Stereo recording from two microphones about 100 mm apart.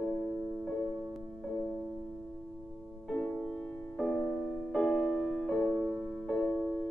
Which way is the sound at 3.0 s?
15° left (ahead or behind).